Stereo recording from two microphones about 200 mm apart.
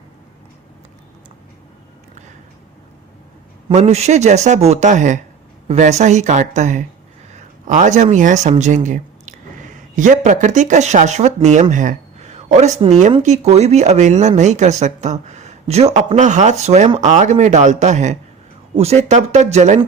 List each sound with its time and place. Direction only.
3.7 s a man's voice: 30° right (ahead or behind)